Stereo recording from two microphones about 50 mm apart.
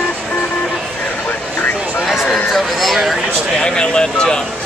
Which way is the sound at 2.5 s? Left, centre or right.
Centre.